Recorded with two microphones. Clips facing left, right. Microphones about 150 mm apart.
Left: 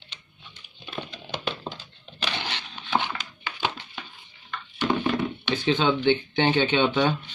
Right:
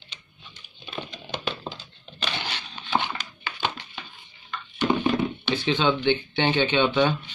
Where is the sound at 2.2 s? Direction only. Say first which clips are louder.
Even; 5° right (ahead or behind).